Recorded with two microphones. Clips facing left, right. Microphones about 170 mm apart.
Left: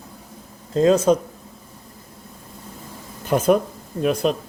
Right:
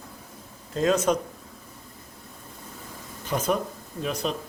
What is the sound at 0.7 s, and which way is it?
Speech, 30° left (ahead or behind).